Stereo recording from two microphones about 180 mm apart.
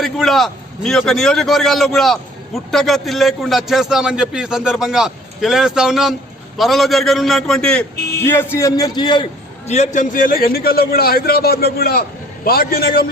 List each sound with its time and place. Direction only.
0.0 s a man's voice: centre (ahead or behind); by 9.2 s 25° left (ahead or behind)
9.6 s a man's voice: 40° left (ahead or behind); by 13.1 s 55° left (ahead or behind)